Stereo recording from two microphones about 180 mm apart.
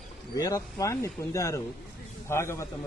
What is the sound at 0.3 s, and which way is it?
Speech, 20° left (ahead or behind).